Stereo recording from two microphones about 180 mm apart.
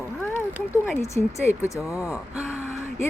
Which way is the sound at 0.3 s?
15° left (ahead or behind).